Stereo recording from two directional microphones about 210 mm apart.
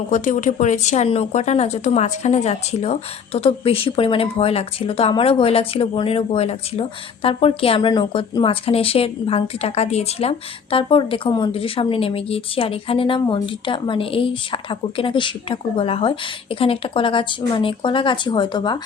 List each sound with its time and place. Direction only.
0.1 s a woman's voice: 35° left (ahead or behind); by 18.8 s 20° left (ahead or behind)